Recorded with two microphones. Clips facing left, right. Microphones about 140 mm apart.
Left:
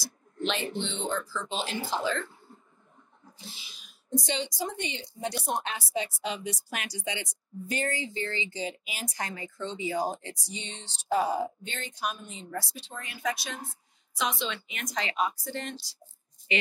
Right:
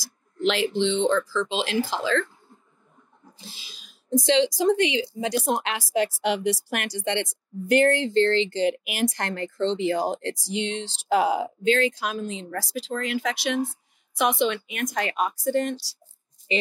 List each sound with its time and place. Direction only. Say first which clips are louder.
0.5 s speech: right 10 dB; 90° right
3.4 s speech: right 1 dB; 90° right
14.1 s a woman's voice: right 9 dB; 60° right (ahead or behind)